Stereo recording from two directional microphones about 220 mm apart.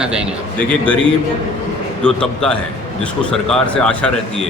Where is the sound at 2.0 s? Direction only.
5° left (ahead or behind).